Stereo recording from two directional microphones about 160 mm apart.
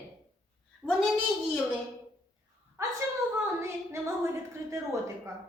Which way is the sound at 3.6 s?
15° right (ahead or behind).